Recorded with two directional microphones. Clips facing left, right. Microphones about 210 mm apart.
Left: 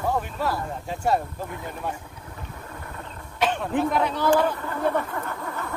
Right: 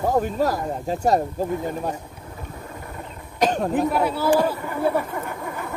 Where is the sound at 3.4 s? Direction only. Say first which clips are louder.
Right 3 dB; 40° right (ahead or behind).